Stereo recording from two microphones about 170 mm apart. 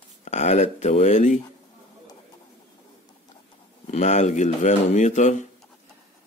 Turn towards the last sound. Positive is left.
turn(degrees=45)  # may be behind; listen again after turning